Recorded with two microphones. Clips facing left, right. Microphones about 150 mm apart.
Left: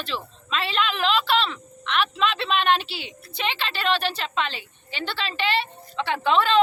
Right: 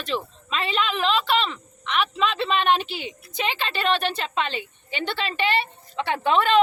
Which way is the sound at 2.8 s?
50° right (ahead or behind).